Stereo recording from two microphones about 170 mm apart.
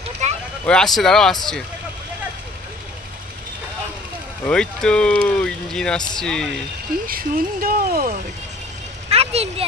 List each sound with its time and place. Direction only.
0.2 s a sound: 40° right (ahead or behind)
0.7 s speech: 5° left (ahead or behind)
4.5 s speech: 5° left (ahead or behind)
7.1 s speech: 60° right (ahead or behind)
9.1 s speech: 35° right (ahead or behind)